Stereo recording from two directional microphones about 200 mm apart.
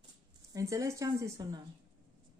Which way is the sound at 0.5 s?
15° right (ahead or behind).